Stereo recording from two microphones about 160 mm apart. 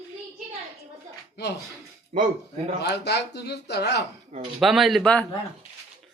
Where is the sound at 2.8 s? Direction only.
90° left.